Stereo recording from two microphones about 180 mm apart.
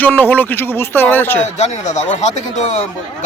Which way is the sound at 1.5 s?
40° left (ahead or behind).